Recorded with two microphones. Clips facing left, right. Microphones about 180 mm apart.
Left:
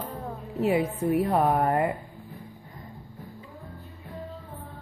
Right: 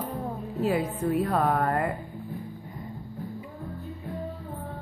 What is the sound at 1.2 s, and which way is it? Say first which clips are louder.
Music: left 2 dB; 20° left (ahead or behind).